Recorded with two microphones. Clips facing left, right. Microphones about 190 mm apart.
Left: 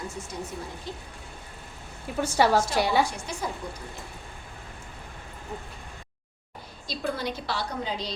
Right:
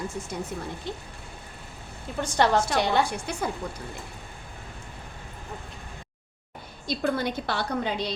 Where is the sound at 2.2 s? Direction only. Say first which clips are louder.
Left 1 dB; 10° left (ahead or behind).